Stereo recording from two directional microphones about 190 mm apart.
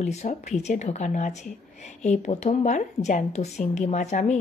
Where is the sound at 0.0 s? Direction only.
35° left (ahead or behind).